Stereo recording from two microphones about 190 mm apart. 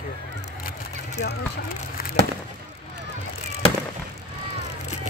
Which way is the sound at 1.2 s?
55° left (ahead or behind).